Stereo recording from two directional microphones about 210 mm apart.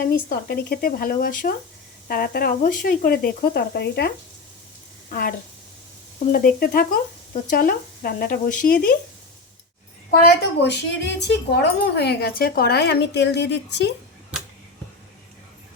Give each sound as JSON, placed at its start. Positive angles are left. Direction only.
{"t": 0.0, "sound": "a woman's voice", "side_deg": 45}
{"t": 6.1, "sound": "a woman's voice", "side_deg": 40}
{"t": 10.1, "sound": "a woman's voice", "side_deg": 50}